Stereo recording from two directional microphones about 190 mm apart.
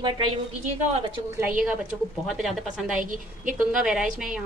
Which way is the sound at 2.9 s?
45° right (ahead or behind).